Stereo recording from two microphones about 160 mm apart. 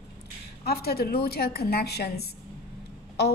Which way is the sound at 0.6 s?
75° left (ahead or behind).